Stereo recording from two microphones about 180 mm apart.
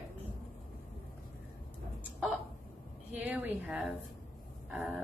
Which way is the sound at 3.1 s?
10° right (ahead or behind).